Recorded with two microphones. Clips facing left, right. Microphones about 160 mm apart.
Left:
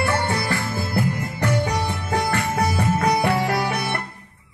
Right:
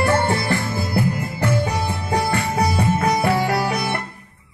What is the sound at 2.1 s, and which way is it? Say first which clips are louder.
Music: right 2 dB; 15° right (ahead or behind).